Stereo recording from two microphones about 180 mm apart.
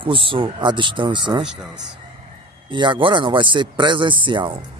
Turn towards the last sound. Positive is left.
turn(degrees=-25)  # may be behind; listen again after turning